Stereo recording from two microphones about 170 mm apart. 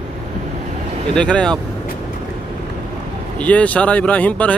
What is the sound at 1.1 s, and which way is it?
Speech, 5° left (ahead or behind).